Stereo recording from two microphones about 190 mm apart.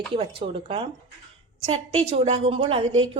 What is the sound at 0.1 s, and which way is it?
A woman's voice, 30° right (ahead or behind).